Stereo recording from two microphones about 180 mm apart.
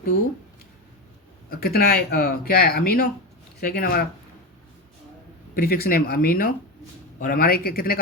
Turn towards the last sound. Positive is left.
turn(degrees=55)  # may be behind; listen again after turning